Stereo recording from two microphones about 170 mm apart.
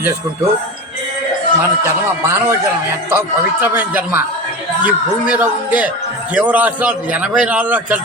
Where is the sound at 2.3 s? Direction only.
15° right (ahead or behind).